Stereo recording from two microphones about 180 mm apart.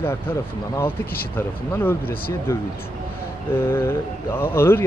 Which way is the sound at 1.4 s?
10° left (ahead or behind).